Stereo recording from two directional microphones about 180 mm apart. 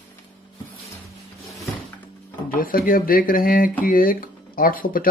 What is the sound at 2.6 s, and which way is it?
Speech, 50° left (ahead or behind).